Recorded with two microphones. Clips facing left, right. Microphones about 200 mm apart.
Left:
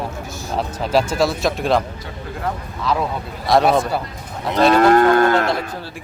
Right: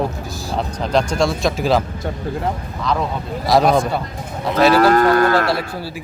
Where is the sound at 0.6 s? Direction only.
5° left (ahead or behind).